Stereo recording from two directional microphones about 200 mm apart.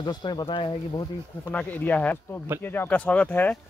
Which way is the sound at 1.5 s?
5° left (ahead or behind).